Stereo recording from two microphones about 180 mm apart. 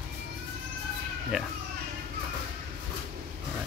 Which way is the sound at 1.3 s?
5° right (ahead or behind).